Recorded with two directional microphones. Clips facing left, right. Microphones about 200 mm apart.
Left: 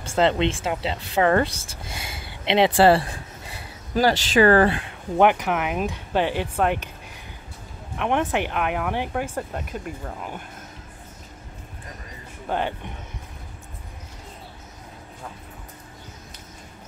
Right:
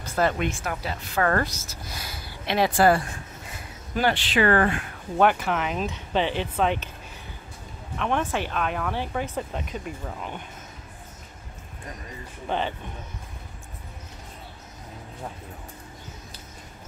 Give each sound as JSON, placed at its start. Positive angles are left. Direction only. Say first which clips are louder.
{"t": 0.0, "sound": "speech", "louder": "left 4 dB", "side_deg": 25}
{"t": 5.1, "sound": "speech", "louder": "left 3 dB", "side_deg": 15}
{"t": 8.0, "sound": "speech", "louder": "left 3 dB", "side_deg": 15}
{"t": 12.4, "sound": "speech", "louder": "left 2 dB", "side_deg": 10}